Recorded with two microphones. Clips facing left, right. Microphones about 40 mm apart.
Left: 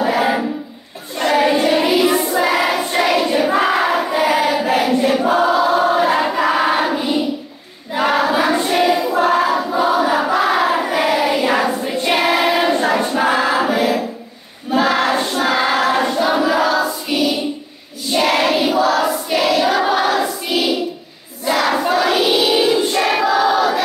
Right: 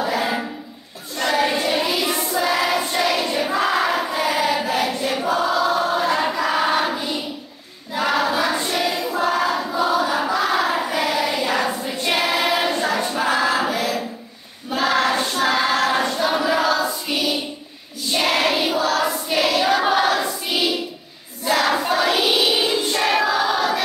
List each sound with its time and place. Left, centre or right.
0.0 s a sound: left
1.6 s child singing: left
2.3 s choir: left
6.3 s a sound: left
7.9 s choir: left
9.1 s a sound: left
10.9 s child singing: left
12.6 s choir: left
16.4 s child singing: centre
18.1 s choir: centre
21.5 s crowd: centre